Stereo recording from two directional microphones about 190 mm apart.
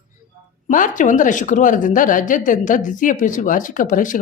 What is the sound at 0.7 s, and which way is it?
A woman's voice, 45° left (ahead or behind).